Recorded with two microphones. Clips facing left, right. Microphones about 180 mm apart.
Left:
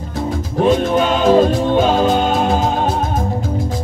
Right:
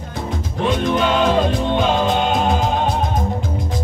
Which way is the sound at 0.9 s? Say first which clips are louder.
Left 3 dB; 40° left (ahead or behind).